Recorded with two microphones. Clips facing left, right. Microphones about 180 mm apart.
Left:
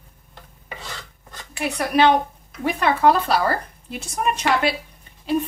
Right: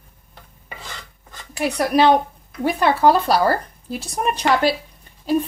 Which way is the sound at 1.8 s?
35° right (ahead or behind).